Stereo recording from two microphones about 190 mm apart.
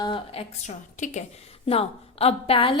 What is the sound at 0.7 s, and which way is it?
A woman's voice, 40° left (ahead or behind).